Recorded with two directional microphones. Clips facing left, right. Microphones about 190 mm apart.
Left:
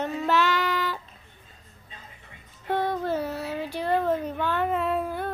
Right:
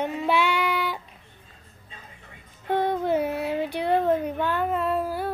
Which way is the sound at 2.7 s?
15° right (ahead or behind).